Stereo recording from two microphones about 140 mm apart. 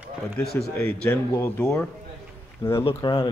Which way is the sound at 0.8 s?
15° left (ahead or behind).